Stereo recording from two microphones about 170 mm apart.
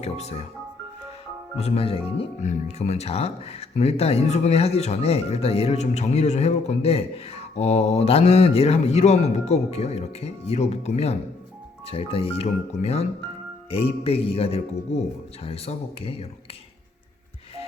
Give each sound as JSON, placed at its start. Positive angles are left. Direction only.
{"t": 0.0, "sound": "speech", "side_deg": 40}
{"t": 1.5, "sound": "speech", "side_deg": 35}